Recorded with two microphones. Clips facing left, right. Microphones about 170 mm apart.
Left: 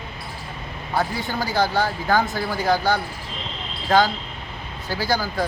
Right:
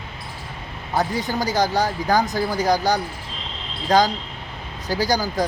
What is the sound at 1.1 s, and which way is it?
Speech, 40° right (ahead or behind).